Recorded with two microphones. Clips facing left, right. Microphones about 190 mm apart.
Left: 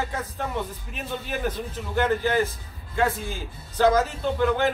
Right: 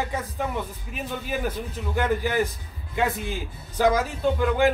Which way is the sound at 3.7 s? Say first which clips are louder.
Left 2 dB; 15° right (ahead or behind).